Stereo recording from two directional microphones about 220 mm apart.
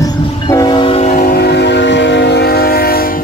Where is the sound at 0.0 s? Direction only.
15° left (ahead or behind).